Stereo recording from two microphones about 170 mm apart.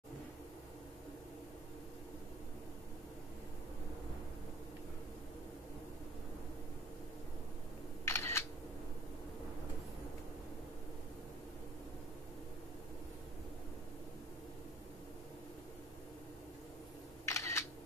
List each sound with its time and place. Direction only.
8.0 s single-lens reflex camera: 15° left (ahead or behind)
17.3 s single-lens reflex camera: 15° left (ahead or behind)